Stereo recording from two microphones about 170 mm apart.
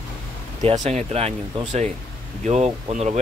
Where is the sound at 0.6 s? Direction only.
40° right (ahead or behind).